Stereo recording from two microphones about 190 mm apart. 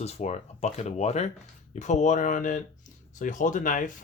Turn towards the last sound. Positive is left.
turn(degrees=45)  # may be behind; listen again after turning